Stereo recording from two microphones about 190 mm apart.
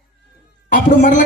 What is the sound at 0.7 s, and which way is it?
Music, 45° left (ahead or behind).